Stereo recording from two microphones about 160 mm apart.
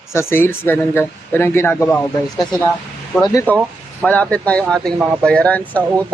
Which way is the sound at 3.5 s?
10° left (ahead or behind).